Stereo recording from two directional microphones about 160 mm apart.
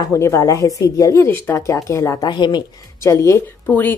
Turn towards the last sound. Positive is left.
turn(degrees=10)  # may be behind; listen again after turning